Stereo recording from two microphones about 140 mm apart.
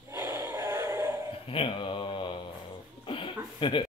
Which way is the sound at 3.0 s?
40° left (ahead or behind).